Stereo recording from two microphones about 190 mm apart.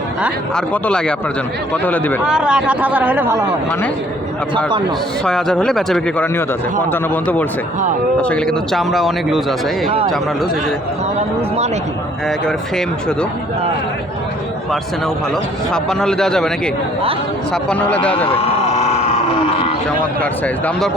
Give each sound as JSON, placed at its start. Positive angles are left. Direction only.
{"t": 0.5, "sound": "a man's voice", "side_deg": 5}
{"t": 2.2, "sound": "speech", "side_deg": -5}
{"t": 5.2, "sound": "a man's voice", "side_deg": 5}
{"t": 12.5, "sound": "speech", "side_deg": 5}
{"t": 15.7, "sound": "speech", "side_deg": 5}
{"t": 17.5, "sound": "a man's voice", "side_deg": 5}
{"t": 18.3, "sound": "a sound", "side_deg": 35}
{"t": 20.4, "sound": "speech", "side_deg": 5}